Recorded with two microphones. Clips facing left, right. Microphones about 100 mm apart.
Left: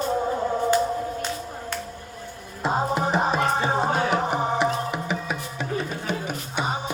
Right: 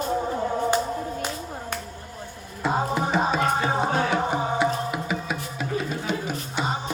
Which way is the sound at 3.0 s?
30° left (ahead or behind).